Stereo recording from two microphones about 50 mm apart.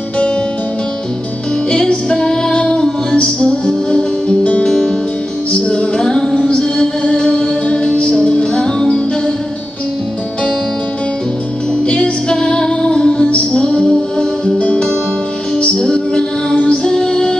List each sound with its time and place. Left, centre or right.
1.7 s music: centre
4.6 s music: centre
5.5 s music: centre
11.8 s music: centre
15.6 s music: centre